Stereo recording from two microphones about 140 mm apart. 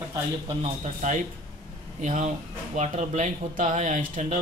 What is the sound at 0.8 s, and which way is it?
Speech, 60° right (ahead or behind).